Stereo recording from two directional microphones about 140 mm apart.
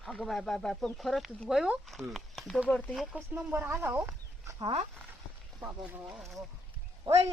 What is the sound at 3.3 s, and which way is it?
Speech, 15° right (ahead or behind).